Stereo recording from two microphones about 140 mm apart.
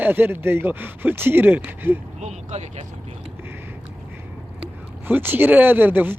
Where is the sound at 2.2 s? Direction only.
55° right (ahead or behind).